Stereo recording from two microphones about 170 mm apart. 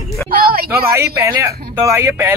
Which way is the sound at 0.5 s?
65° right (ahead or behind).